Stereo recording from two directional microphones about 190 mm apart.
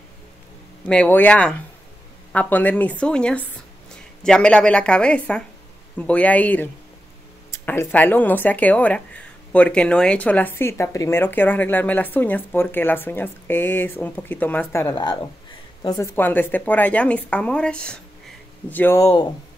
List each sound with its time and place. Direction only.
0.8 s speech: 5° left (ahead or behind)
16.2 s speech: 10° left (ahead or behind)